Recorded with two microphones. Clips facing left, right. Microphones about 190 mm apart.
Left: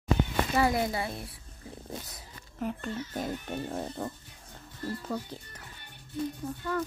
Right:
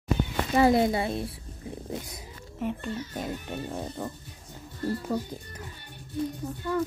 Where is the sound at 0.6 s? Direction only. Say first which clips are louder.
Right 7 dB; 25° right (ahead or behind).